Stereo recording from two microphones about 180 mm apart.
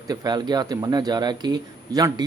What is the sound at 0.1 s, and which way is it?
Speech, 25° right (ahead or behind).